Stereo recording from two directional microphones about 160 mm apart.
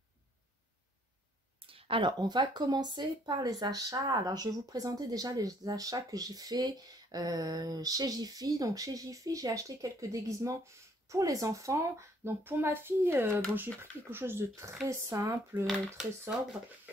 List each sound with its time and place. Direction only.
1.7 s speech: 35° right (ahead or behind); by 15.6 s 20° right (ahead or behind)
15.6 s speech: centre (ahead or behind)